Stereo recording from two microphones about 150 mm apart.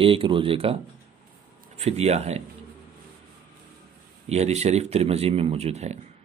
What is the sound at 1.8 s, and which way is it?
Speech, 45° right (ahead or behind).